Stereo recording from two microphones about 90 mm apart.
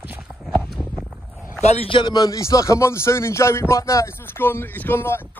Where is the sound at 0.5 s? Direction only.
Centre (ahead or behind).